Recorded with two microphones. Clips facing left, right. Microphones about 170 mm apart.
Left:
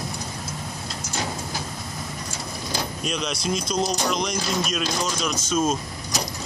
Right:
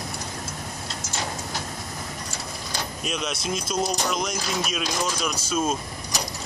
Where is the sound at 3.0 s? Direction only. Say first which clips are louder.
Even; 5° right (ahead or behind).